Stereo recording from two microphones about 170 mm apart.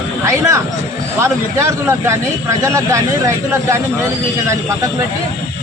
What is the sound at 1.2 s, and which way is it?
A man's voice, 15° right (ahead or behind).